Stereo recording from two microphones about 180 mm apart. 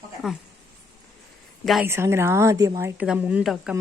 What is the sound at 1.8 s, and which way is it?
Speech, 15° right (ahead or behind).